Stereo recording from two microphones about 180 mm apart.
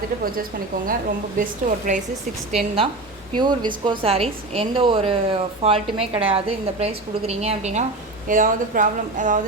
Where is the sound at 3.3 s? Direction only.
25° right (ahead or behind).